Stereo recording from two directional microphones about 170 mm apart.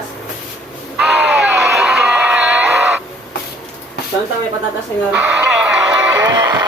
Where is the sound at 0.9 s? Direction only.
5° right (ahead or behind).